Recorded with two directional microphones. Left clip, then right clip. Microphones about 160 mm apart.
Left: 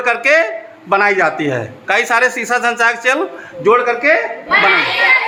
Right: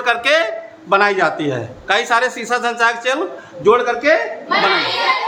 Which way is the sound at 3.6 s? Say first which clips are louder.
Left 2 dB; 5° left (ahead or behind).